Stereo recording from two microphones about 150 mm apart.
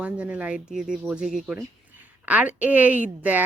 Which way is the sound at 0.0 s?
10° right (ahead or behind).